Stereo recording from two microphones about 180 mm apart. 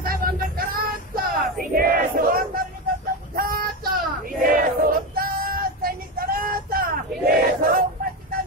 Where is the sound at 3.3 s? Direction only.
55° right (ahead or behind).